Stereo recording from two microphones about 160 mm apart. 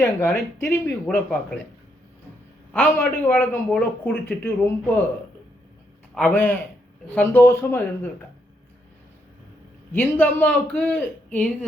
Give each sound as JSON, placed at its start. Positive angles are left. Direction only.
{"t": 0.0, "sound": "speech", "side_deg": 15}
{"t": 1.0, "sound": "speech", "side_deg": 5}
{"t": 2.7, "sound": "speech", "side_deg": 10}
{"t": 6.1, "sound": "speech", "side_deg": 10}
{"t": 9.9, "sound": "speech", "side_deg": 10}